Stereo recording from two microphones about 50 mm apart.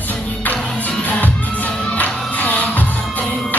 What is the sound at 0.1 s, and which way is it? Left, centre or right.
Music, left.